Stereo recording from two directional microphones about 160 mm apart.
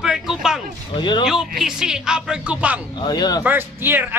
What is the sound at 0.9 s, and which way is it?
Music, 30° left (ahead or behind).